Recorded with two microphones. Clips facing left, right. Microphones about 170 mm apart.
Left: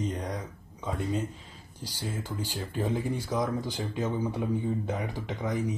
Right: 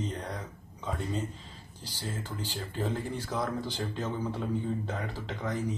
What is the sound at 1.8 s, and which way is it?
Speech, 10° left (ahead or behind).